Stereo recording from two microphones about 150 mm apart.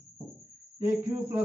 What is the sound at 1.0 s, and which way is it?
Speech, 20° right (ahead or behind).